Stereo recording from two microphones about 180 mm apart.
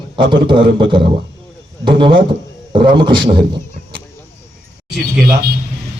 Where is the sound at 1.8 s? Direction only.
25° right (ahead or behind).